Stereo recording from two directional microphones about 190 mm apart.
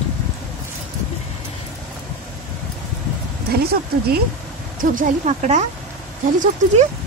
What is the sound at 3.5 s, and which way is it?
Speech, 55° right (ahead or behind).